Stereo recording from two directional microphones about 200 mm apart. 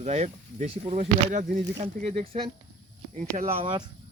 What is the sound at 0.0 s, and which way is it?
Speech, 35° right (ahead or behind).